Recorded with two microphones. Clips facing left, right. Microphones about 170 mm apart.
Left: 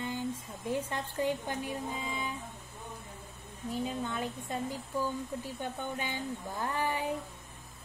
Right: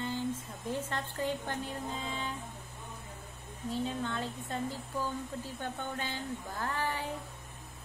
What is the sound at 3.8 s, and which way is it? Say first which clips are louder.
Speech: left 1 dB; 15° left (ahead or behind).